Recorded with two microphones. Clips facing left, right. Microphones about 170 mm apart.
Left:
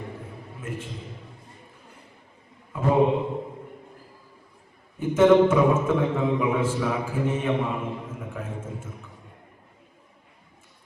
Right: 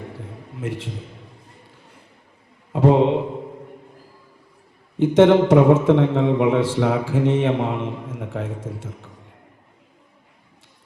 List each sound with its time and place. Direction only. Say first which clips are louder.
0.6 s a man's voice: right 6 dB; 85° right
2.7 s a man's voice: right 5 dB; 80° right
4.9 s speech: right 3 dB; 80° right